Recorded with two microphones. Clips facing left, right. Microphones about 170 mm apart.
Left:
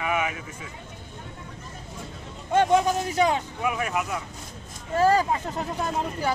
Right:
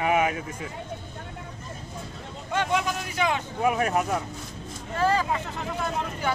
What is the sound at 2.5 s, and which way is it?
Speech, 40° left (ahead or behind).